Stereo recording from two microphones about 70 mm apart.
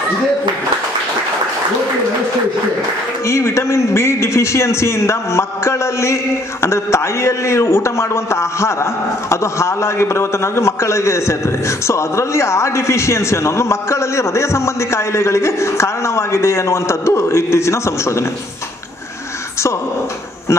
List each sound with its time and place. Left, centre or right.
3.3 s a man's voice: left